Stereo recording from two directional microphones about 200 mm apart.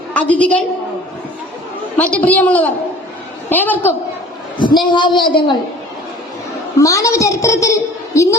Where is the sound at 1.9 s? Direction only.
5° left (ahead or behind).